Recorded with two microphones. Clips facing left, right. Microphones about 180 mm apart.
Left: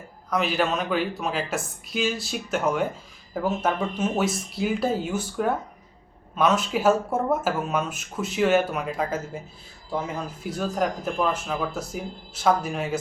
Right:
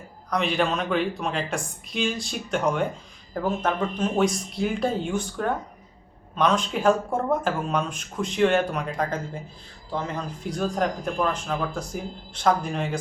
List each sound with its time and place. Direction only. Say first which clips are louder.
0.3 s speech: even; 5° left (ahead or behind)